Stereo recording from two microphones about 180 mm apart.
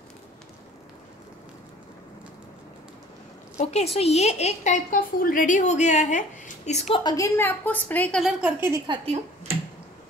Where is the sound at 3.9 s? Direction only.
35° left (ahead or behind).